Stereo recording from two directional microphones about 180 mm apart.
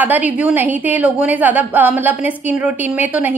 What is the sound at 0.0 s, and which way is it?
A woman's voice, 10° right (ahead or behind).